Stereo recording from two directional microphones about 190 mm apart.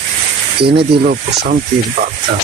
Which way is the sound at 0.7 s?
55° right (ahead or behind).